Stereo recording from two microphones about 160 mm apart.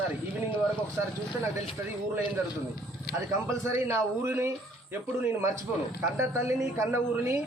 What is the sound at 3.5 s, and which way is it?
A man's voice, 15° right (ahead or behind).